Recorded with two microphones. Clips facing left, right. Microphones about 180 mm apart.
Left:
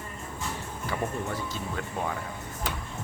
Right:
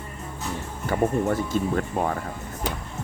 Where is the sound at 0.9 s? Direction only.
50° right (ahead or behind).